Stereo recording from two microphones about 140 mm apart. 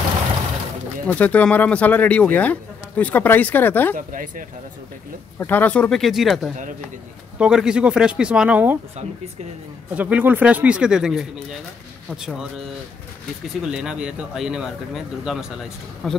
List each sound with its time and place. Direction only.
1.0 s speech: 10° left (ahead or behind)
3.9 s speech: 75° right (ahead or behind)
5.4 s speech: 15° left (ahead or behind); by 8.7 s 10° right (ahead or behind)
9.9 s speech: 10° right (ahead or behind)
13.6 s speech: 5° right (ahead or behind)